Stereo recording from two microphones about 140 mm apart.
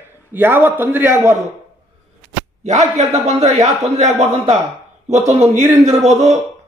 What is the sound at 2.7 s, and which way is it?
A man's voice, 50° right (ahead or behind).